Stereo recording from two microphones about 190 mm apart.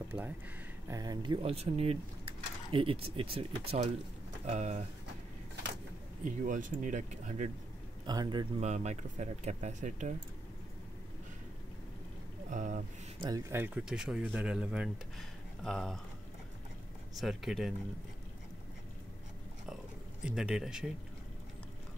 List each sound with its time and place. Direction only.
0.1 s speech: 15° right (ahead or behind); by 4.8 s 40° right (ahead or behind)
6.2 s speech: 40° right (ahead or behind)
8.1 s speech: 20° right (ahead or behind)
8.5 s speech: 35° right (ahead or behind)
12.4 s speech: 40° right (ahead or behind)
13.2 s speech: 15° right (ahead or behind); by 16.0 s centre (ahead or behind)
17.2 s speech: centre (ahead or behind)
20.2 s speech: 5° right (ahead or behind)